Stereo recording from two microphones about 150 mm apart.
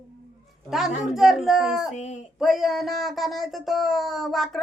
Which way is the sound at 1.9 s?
50° left (ahead or behind).